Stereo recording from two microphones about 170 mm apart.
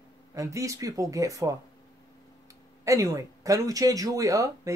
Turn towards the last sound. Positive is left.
turn(degrees=-20)  # may be behind; listen again after turning